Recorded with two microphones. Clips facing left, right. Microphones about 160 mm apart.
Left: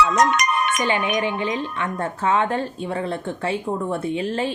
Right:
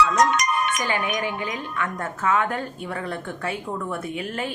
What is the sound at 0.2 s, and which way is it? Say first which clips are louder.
Music: left 1 dB; 60° left (ahead or behind).